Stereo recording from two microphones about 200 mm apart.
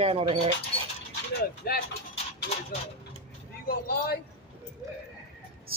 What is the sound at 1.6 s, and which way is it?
Speech, 50° left (ahead or behind).